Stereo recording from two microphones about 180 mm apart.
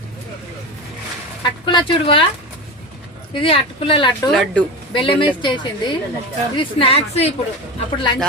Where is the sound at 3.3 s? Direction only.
30° left (ahead or behind).